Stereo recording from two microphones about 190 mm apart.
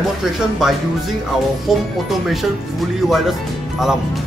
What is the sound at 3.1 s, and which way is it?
Speech, centre (ahead or behind).